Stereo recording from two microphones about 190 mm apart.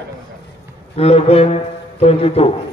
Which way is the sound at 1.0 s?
35° left (ahead or behind).